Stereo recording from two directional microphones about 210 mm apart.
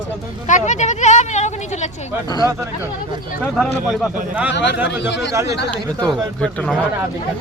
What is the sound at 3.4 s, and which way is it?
Speech, 5° left (ahead or behind).